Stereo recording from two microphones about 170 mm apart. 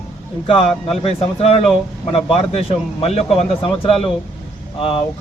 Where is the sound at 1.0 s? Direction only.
35° left (ahead or behind).